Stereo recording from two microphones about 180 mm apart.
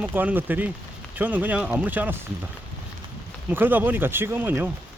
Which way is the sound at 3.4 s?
10° right (ahead or behind).